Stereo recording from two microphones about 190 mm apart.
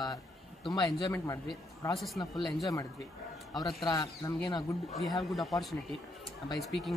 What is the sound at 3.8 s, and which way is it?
Speech, 20° left (ahead or behind).